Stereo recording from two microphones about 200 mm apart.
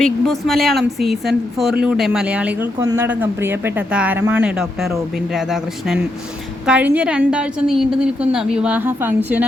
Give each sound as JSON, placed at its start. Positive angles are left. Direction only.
{"t": 0.0, "sound": "a woman's voice", "side_deg": 0}